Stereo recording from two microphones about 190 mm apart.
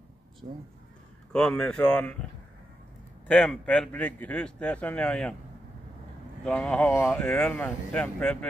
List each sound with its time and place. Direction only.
0.4 s speech: 30° right (ahead or behind)
1.3 s a man's voice: 5° left (ahead or behind)
3.3 s a man's voice: 5° left (ahead or behind)
6.4 s a man's voice: 5° left (ahead or behind)